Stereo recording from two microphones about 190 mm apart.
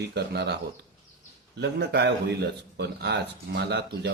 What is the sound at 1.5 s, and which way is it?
Speech, 60° right (ahead or behind).